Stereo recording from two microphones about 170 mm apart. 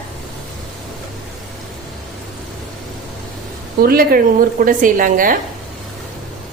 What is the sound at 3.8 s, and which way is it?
A woman's voice, 60° right (ahead or behind).